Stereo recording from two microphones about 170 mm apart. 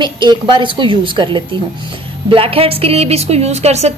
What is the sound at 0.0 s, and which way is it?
A woman's voice, 25° right (ahead or behind).